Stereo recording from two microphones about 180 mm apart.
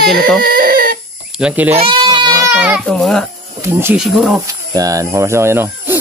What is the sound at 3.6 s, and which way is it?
Speech, 15° right (ahead or behind).